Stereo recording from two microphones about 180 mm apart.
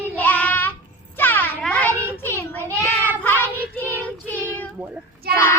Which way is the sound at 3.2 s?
10° left (ahead or behind).